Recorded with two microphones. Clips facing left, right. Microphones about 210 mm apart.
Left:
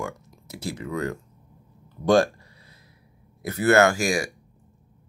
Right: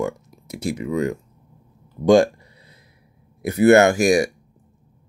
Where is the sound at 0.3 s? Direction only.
15° right (ahead or behind).